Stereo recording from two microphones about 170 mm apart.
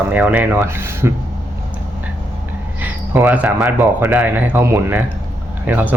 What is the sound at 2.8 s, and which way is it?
Speech, 10° right (ahead or behind).